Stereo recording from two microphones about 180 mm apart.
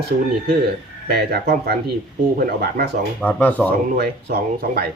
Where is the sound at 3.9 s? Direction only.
65° right (ahead or behind).